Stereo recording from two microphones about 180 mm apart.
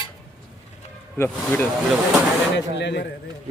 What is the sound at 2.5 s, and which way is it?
Speech, 75° left (ahead or behind).